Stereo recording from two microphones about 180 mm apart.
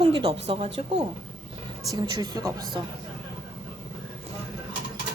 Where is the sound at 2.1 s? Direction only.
20° right (ahead or behind).